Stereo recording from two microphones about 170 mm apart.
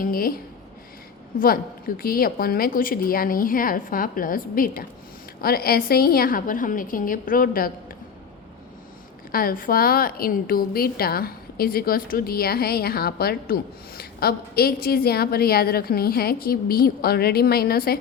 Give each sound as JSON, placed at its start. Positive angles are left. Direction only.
{"t": 0.0, "sound": "a woman's voice", "side_deg": 60}
{"t": 1.3, "sound": "a woman's voice", "side_deg": 55}
{"t": 9.3, "sound": "a woman's voice", "side_deg": 60}